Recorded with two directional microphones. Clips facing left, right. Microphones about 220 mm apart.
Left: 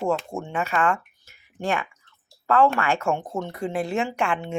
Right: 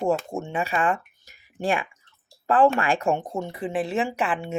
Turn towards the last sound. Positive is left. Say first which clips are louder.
# left 1 dB
turn(degrees=-5)  # may be behind; listen again after turning